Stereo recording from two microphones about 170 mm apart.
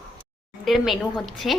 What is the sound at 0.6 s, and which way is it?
Speech, centre (ahead or behind).